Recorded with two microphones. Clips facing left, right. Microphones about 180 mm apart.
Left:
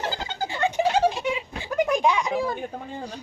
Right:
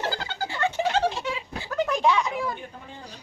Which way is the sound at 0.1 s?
15° left (ahead or behind).